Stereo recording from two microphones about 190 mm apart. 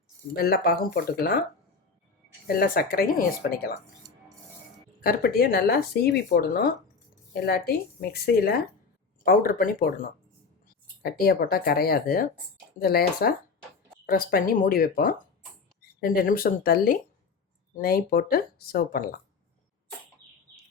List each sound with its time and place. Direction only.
0.3 s speech: 55° left (ahead or behind)
2.5 s speech: 50° left (ahead or behind)
4.9 s speech: 50° left (ahead or behind)